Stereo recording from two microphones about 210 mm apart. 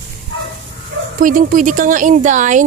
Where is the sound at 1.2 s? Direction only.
40° right (ahead or behind).